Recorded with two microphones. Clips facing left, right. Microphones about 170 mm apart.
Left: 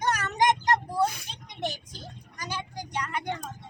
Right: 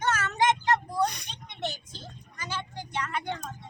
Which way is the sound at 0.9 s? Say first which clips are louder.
Left 1 dB; 5° left (ahead or behind).